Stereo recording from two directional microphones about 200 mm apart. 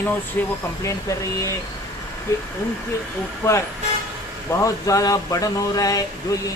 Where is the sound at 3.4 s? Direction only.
15° left (ahead or behind).